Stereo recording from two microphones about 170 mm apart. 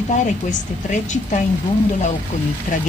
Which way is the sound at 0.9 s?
45° left (ahead or behind).